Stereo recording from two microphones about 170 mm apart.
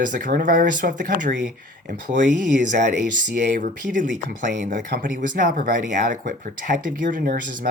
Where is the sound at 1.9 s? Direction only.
65° right (ahead or behind).